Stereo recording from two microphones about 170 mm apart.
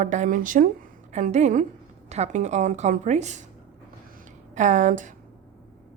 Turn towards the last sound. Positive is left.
turn(degrees=-50)  # may be behind; listen again after turning